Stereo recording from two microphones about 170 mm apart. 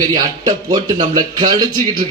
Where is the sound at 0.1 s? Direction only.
25° right (ahead or behind).